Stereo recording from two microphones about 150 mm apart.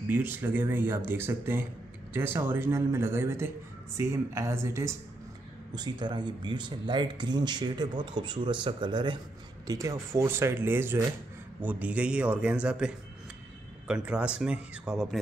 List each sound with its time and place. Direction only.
0.1 s a man's voice: 10° right (ahead or behind)
5.8 s speech: 30° right (ahead or behind)
9.7 s a man's voice: 20° right (ahead or behind); by 15.1 s 5° right (ahead or behind)